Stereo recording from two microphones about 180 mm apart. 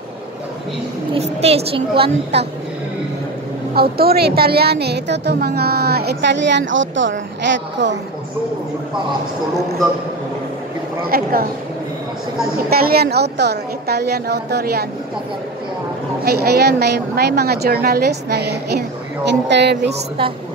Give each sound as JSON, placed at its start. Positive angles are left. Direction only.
{"t": 1.1, "sound": "a woman's voice", "side_deg": -35}
{"t": 3.7, "sound": "a woman's voice", "side_deg": -60}
{"t": 11.1, "sound": "a woman's voice", "side_deg": -55}
{"t": 12.6, "sound": "a woman's voice", "side_deg": -60}
{"t": 16.3, "sound": "a woman's voice", "side_deg": -60}
{"t": 19.9, "sound": "a woman's voice", "side_deg": -30}